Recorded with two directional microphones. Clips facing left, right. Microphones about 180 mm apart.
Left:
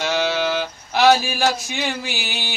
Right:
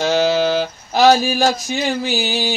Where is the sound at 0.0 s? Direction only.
40° right (ahead or behind).